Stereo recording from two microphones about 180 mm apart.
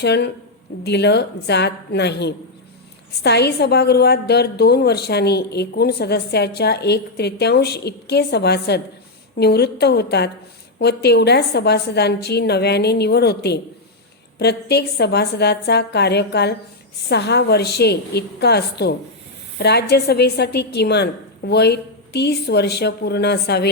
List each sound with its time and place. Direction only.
0.0 s a woman's voice: 70° left (ahead or behind)